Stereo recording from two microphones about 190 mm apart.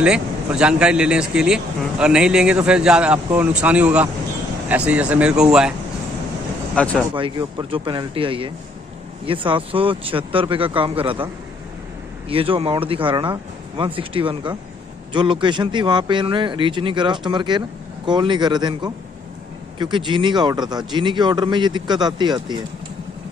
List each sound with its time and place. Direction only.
0.0 s speech: 5° right (ahead or behind)
6.7 s speech: 5° left (ahead or behind)
7.2 s speech: 25° right (ahead or behind)
12.3 s speech: 30° right (ahead or behind)